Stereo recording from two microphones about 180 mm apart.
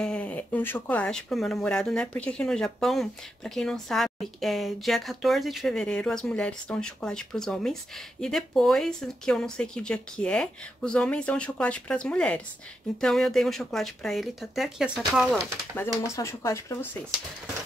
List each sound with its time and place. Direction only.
0.0 s speech: 5° left (ahead or behind)
15.3 s speech: 10° left (ahead or behind)